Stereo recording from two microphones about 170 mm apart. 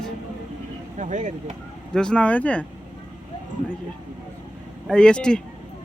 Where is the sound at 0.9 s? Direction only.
45° right (ahead or behind).